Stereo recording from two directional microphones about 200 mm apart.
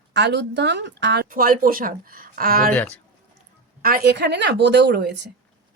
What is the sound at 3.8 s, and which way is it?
Speech, 50° right (ahead or behind).